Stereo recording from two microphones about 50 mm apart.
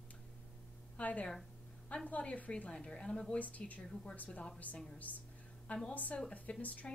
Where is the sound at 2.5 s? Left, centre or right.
Centre.